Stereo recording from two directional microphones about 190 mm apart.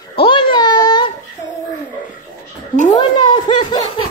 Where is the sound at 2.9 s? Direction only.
25° left (ahead or behind).